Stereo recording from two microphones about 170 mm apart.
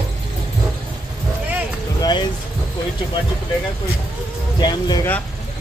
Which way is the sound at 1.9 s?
25° left (ahead or behind).